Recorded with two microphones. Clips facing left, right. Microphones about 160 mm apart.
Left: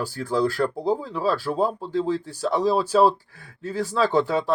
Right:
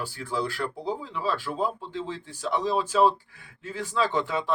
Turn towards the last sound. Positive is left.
turn(degrees=35)  # may be behind; listen again after turning